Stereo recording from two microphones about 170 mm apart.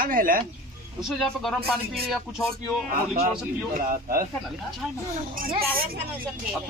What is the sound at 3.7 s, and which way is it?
Speech, 55° right (ahead or behind).